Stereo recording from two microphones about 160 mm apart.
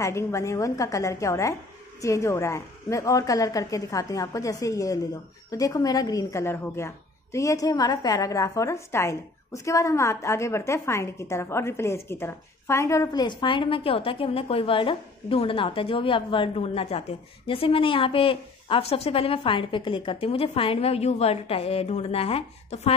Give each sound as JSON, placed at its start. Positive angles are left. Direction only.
{"t": 0.0, "sound": "a woman's voice", "side_deg": 20}